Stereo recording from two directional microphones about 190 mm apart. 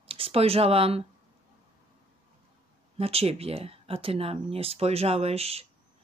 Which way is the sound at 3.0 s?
30° right (ahead or behind).